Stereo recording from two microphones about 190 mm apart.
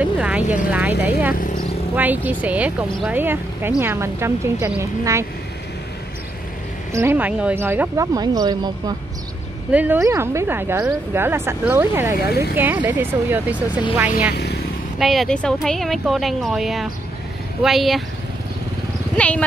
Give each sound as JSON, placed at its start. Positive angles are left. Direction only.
{"t": 0.0, "sound": "vehicle", "side_deg": -5}
{"t": 0.4, "sound": "speech", "side_deg": 40}
{"t": 0.7, "sound": "speech", "side_deg": -10}
{"t": 1.3, "sound": "a sound", "side_deg": 45}
{"t": 2.0, "sound": "speech", "side_deg": -10}
{"t": 6.9, "sound": "speech", "side_deg": -15}
{"t": 9.7, "sound": "speech", "side_deg": -5}
{"t": 12.3, "sound": "speech", "side_deg": 55}
{"t": 12.5, "sound": "speech", "side_deg": -10}
{"t": 14.3, "sound": "vehicle", "side_deg": 60}
{"t": 15.0, "sound": "speech", "side_deg": 0}
{"t": 19.1, "sound": "speech", "side_deg": 5}